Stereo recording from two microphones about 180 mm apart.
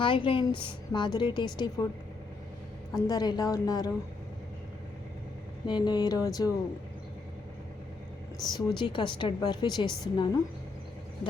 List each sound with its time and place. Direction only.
0.0 s a woman's voice: 30° left (ahead or behind)
2.9 s a woman's voice: 20° left (ahead or behind)
5.6 s a woman's voice: 25° left (ahead or behind)
8.4 s a woman's voice: 25° left (ahead or behind)